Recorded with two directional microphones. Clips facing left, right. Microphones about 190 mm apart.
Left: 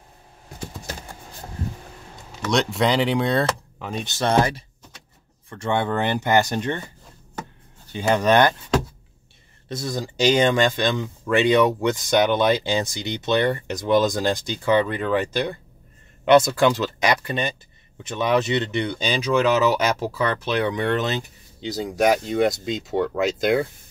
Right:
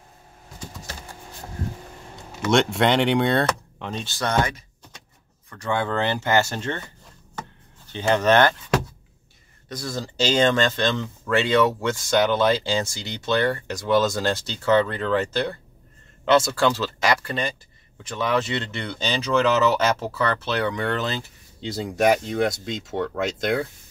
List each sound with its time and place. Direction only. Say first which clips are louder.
2.5 s speech: right 1 dB; centre (ahead or behind)
3.9 s speech: left 4 dB; 20° left (ahead or behind)
7.9 s speech: even; 10° left (ahead or behind)
9.7 s speech: left 3 dB; 20° left (ahead or behind)
21.5 s speech: left 1 dB; centre (ahead or behind)